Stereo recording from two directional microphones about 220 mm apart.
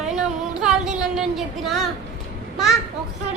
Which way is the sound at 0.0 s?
Centre (ahead or behind).